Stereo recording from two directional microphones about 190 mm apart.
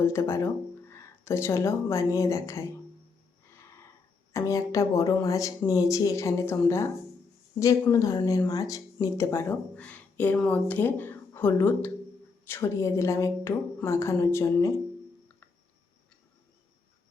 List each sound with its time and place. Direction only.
0.0 s speech: 15° left (ahead or behind)
4.3 s speech: 15° left (ahead or behind)